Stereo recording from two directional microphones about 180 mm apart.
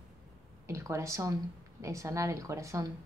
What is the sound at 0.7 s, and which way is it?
Speech, 15° right (ahead or behind).